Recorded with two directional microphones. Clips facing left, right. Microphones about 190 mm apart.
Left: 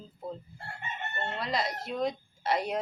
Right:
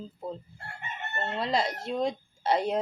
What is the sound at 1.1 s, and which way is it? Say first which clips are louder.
Speech: right 4 dB; 30° right (ahead or behind).